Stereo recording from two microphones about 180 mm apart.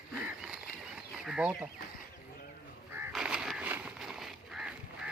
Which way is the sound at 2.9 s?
5° right (ahead or behind).